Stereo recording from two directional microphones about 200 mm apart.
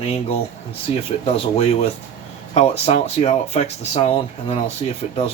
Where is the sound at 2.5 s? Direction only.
30° left (ahead or behind).